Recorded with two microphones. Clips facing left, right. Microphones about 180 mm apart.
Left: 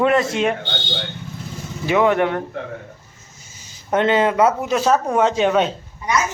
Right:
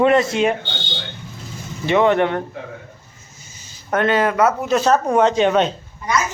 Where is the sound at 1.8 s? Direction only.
5° left (ahead or behind).